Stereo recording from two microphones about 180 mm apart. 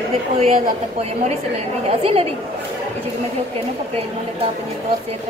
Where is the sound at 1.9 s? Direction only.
30° right (ahead or behind).